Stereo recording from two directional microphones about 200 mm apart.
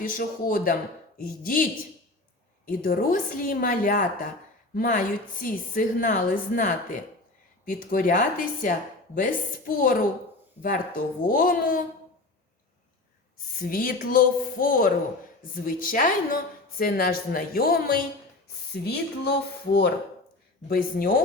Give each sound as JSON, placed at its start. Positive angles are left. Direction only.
{"t": 0.0, "sound": "a woman's voice", "side_deg": 45}
{"t": 2.6, "sound": "a woman's voice", "side_deg": 45}
{"t": 13.6, "sound": "a woman's voice", "side_deg": 45}
{"t": 20.7, "sound": "a woman's voice", "side_deg": 45}